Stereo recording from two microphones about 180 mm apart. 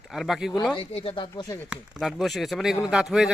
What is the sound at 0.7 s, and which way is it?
Speech, 30° left (ahead or behind).